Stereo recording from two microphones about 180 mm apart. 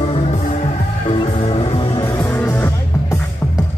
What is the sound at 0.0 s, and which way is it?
Music, 30° left (ahead or behind).